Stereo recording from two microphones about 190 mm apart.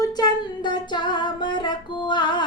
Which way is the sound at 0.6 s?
25° left (ahead or behind).